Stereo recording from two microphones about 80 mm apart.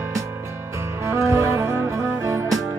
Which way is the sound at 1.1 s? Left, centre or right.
Right.